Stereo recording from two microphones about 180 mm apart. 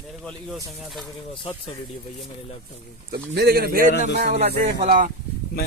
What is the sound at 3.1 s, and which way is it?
Speech, 60° right (ahead or behind).